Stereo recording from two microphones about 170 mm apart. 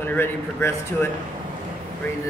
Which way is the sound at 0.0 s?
15° left (ahead or behind).